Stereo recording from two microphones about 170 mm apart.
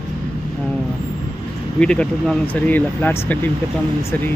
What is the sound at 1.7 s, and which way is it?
Speech, 5° left (ahead or behind).